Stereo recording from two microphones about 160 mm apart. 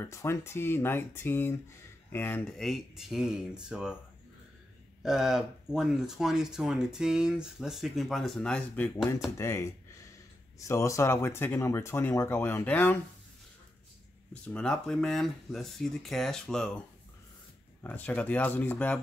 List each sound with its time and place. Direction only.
0.0 s speech: 15° left (ahead or behind); by 3.9 s 5° right (ahead or behind)
5.0 s speech: 5° right (ahead or behind)
14.3 s speech: 5° left (ahead or behind)
17.8 s speech: 10° left (ahead or behind)